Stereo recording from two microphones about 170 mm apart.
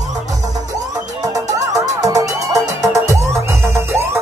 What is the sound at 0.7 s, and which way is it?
Music, 20° right (ahead or behind).